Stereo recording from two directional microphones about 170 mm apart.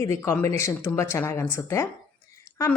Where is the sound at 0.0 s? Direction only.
15° left (ahead or behind).